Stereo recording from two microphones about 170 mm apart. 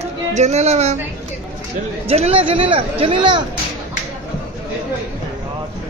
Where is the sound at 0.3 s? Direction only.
40° right (ahead or behind).